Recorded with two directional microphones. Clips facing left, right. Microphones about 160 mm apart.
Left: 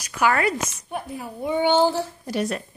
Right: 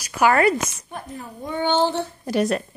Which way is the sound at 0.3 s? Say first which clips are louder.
Right 5 dB; 45° right (ahead or behind).